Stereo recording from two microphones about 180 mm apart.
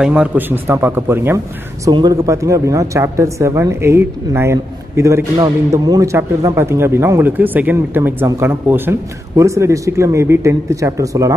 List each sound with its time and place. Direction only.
0.0 s speech: 5° right (ahead or behind)